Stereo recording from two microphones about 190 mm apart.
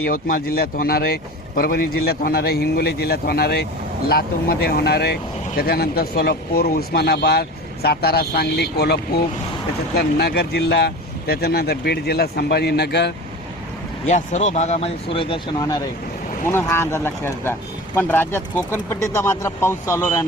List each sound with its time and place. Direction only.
0.0 s a man's voice: 50° left (ahead or behind)
14.1 s speech: 40° left (ahead or behind); by 20.2 s 15° left (ahead or behind)